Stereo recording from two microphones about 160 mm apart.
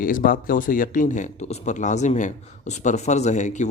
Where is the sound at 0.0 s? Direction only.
60° left (ahead or behind).